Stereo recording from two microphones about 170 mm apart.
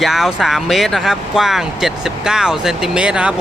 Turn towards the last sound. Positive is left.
turn(degrees=-5)  # may be behind; listen again after turning